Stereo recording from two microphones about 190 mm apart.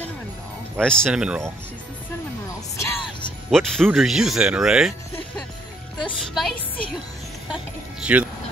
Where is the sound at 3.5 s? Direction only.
Centre (ahead or behind).